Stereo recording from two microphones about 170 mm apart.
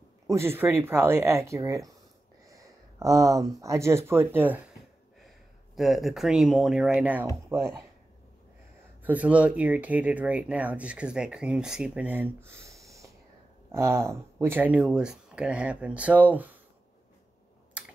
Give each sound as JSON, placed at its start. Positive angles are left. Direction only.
{"t": 0.3, "sound": "speech", "side_deg": -15}
{"t": 5.8, "sound": "speech", "side_deg": 0}
{"t": 9.0, "sound": "speech", "side_deg": -10}